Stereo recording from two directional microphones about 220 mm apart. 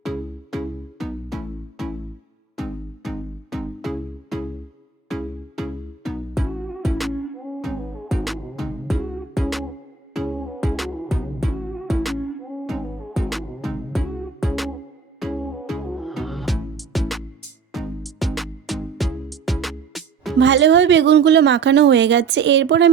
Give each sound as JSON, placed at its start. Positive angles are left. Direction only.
{"t": 0.0, "sound": "music", "side_deg": 0}
{"t": 20.4, "sound": "speech", "side_deg": -55}